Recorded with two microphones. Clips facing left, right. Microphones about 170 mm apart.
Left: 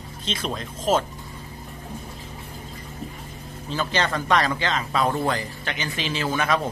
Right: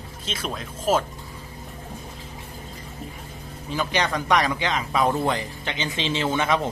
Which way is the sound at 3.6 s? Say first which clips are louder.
Even; 15° right (ahead or behind).